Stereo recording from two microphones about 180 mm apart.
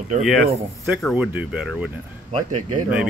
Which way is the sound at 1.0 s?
5° right (ahead or behind).